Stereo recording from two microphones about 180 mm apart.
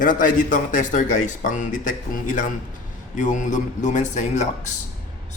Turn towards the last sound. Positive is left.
turn(degrees=40)  # may be behind; listen again after turning